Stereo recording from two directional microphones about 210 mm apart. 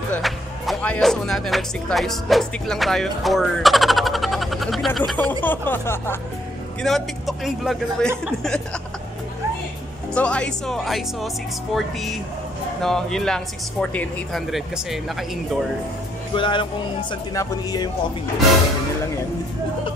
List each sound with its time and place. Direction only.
0.1 s speech: 5° left (ahead or behind)
10.1 s speech: 5° left (ahead or behind)
16.3 s speech: 25° left (ahead or behind)